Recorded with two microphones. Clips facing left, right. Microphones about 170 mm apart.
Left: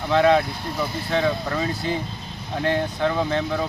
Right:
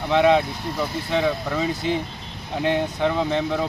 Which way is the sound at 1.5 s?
15° right (ahead or behind).